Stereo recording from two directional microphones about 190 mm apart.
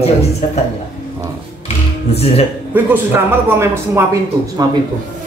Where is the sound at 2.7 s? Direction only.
10° right (ahead or behind).